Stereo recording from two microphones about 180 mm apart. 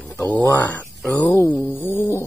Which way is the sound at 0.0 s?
10° left (ahead or behind).